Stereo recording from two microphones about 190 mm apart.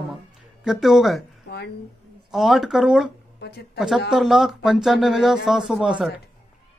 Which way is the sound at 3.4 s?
55° left (ahead or behind).